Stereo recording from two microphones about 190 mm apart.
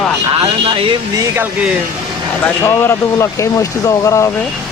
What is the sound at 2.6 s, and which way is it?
Speech, 15° left (ahead or behind).